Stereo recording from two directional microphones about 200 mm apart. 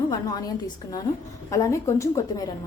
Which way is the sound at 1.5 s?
15° left (ahead or behind).